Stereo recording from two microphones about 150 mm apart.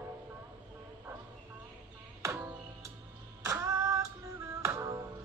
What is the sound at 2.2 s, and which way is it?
Music, 20° right (ahead or behind).